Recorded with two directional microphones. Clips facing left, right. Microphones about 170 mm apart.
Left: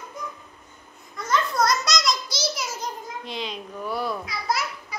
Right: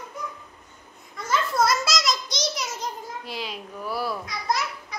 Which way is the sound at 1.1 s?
5° right (ahead or behind).